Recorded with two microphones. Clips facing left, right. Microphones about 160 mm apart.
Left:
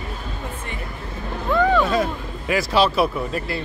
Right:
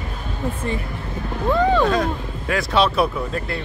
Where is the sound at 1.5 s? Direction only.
25° right (ahead or behind).